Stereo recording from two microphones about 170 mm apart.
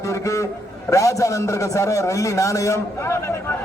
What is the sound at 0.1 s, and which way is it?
A man's voice, 20° left (ahead or behind).